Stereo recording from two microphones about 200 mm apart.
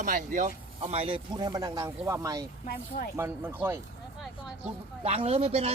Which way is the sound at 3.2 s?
10° right (ahead or behind).